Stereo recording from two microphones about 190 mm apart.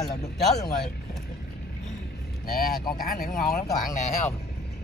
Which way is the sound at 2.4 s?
50° left (ahead or behind).